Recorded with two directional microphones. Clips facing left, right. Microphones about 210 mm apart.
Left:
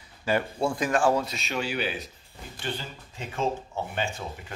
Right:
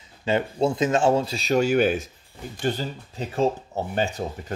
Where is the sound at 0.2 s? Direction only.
20° right (ahead or behind).